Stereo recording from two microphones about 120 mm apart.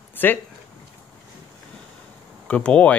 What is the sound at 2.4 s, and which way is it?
Speech, 10° left (ahead or behind).